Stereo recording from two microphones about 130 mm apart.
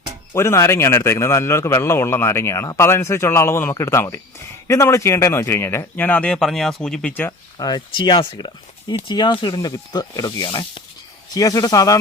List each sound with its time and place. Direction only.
0.3 s a man's voice: 20° left (ahead or behind); by 7.1 s 5° left (ahead or behind)
7.1 s speech: 15° left (ahead or behind)
7.6 s a man's voice: 35° left (ahead or behind)